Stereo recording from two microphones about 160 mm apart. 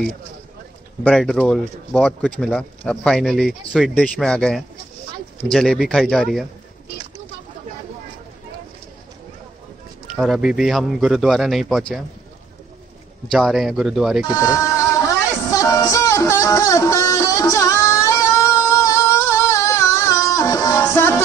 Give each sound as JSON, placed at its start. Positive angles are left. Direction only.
{"t": 1.0, "sound": "speech", "side_deg": 5}
{"t": 10.1, "sound": "speech", "side_deg": 0}
{"t": 13.3, "sound": "speech", "side_deg": 0}
{"t": 14.2, "sound": "music", "side_deg": 20}